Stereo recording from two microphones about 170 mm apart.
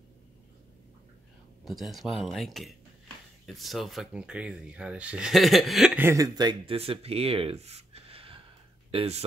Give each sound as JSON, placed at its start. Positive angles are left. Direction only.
{"t": 1.6, "sound": "speech", "side_deg": 0}